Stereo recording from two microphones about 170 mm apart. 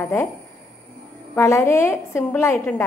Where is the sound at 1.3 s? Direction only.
20° left (ahead or behind).